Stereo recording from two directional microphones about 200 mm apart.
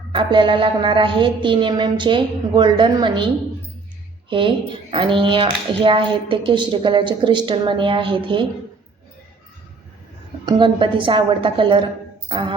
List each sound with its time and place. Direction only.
0.1 s speech: 25° right (ahead or behind)
4.3 s speech: 25° right (ahead or behind)
10.4 s speech: 25° right (ahead or behind)